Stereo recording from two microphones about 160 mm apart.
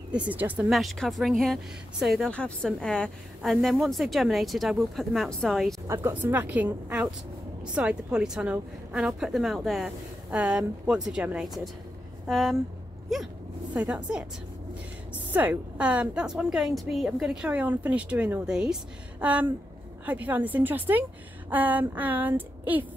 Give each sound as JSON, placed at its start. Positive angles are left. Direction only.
{"t": 0.3, "sound": "a woman's voice", "side_deg": -10}
{"t": 5.9, "sound": "a woman's voice", "side_deg": -15}
{"t": 13.7, "sound": "a woman's voice", "side_deg": -10}
{"t": 15.3, "sound": "a woman's voice", "side_deg": -10}